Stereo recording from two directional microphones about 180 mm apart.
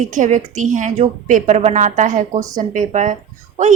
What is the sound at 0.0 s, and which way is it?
A woman's voice, 45° right (ahead or behind).